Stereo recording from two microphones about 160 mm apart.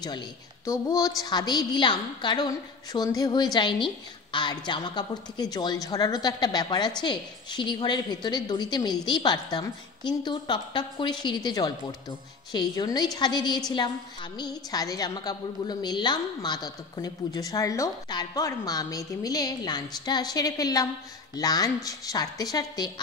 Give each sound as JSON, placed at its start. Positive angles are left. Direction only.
{"t": 0.7, "sound": "a woman's voice", "side_deg": 20}